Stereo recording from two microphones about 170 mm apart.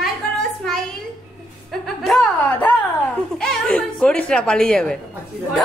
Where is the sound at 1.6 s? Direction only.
Centre (ahead or behind).